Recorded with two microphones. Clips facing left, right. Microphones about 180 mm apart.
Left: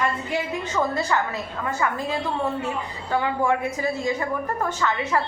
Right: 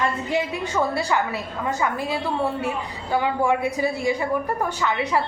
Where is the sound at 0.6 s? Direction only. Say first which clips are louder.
Right 1 dB; 10° right (ahead or behind).